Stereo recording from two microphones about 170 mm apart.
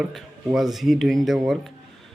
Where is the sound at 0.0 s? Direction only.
Centre (ahead or behind).